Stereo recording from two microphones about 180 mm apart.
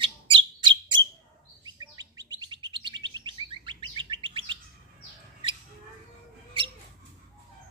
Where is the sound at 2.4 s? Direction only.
25° right (ahead or behind).